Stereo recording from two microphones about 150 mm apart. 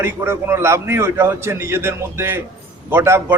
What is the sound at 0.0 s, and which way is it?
A man's voice, 15° right (ahead or behind).